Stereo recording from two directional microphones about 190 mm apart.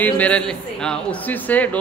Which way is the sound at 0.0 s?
5° left (ahead or behind).